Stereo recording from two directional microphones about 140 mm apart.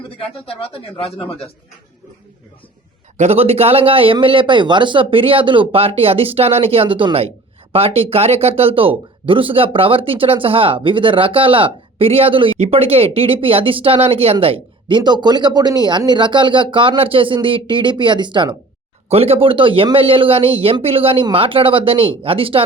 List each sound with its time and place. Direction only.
0.2 s speech: 40° left (ahead or behind)
3.2 s speech: 50° right (ahead or behind)
19.0 s speech: 45° right (ahead or behind)